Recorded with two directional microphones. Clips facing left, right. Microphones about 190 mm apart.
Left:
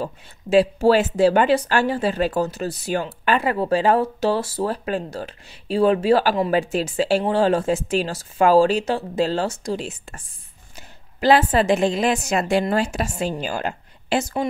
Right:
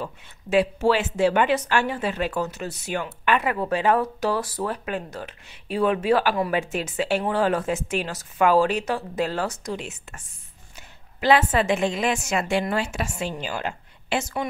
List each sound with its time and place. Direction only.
0.0 s speech: 35° left (ahead or behind)